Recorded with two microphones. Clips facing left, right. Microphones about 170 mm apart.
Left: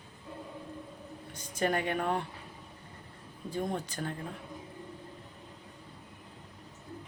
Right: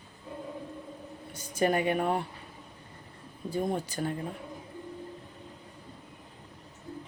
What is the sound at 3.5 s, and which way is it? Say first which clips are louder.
Speech: right 4 dB; 10° right (ahead or behind).